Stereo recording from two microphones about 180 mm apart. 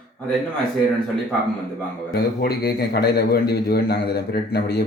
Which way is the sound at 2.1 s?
60° left (ahead or behind).